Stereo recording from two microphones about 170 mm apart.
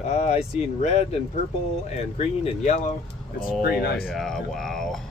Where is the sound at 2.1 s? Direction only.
40° left (ahead or behind).